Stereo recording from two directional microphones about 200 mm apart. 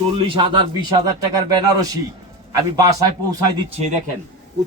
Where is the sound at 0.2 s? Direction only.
25° right (ahead or behind).